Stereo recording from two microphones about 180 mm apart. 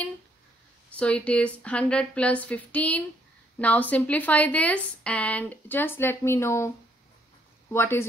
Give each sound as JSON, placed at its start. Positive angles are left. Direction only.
{"t": 0.9, "sound": "speech", "side_deg": 5}
{"t": 7.7, "sound": "speech", "side_deg": 15}